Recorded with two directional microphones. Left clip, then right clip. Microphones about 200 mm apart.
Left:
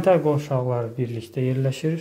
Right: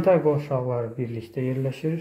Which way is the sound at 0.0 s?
15° left (ahead or behind).